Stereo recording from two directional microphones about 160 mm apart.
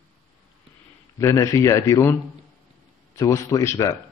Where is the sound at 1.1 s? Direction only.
20° left (ahead or behind).